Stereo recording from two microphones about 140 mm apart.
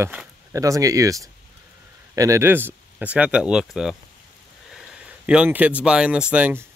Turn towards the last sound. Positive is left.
turn(degrees=-15)  # may be behind; listen again after turning